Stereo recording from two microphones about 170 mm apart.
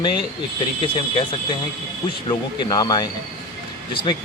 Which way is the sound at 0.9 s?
30° left (ahead or behind).